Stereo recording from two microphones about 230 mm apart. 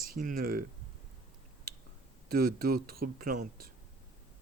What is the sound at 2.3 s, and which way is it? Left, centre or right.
Speech, right.